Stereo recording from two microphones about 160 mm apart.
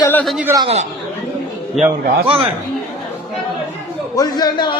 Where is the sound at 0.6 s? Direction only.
40° right (ahead or behind).